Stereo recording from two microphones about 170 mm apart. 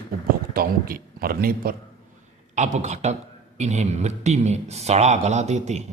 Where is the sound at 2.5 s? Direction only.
45° right (ahead or behind).